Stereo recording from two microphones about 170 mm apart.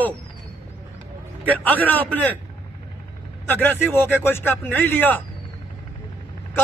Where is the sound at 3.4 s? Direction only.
10° left (ahead or behind).